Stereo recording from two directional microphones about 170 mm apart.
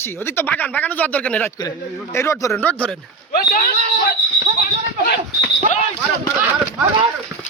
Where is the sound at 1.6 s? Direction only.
20° left (ahead or behind).